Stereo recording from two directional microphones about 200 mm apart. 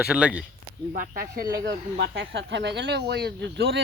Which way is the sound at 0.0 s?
5° right (ahead or behind).